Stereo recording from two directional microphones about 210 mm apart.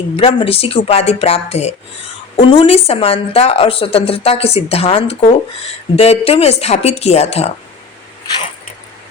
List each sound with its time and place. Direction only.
0.2 s a woman's voice: 25° left (ahead or behind)